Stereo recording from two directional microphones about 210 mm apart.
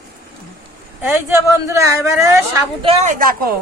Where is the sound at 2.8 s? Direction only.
35° right (ahead or behind).